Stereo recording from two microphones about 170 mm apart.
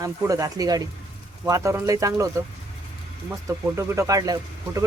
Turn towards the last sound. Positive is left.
turn(degrees=-20)  # may be behind; listen again after turning